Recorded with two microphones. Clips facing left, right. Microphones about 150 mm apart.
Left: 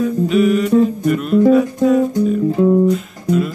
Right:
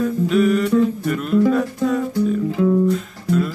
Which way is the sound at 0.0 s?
5° left (ahead or behind).